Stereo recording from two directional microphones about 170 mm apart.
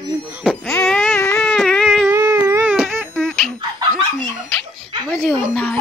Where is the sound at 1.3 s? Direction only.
5° left (ahead or behind).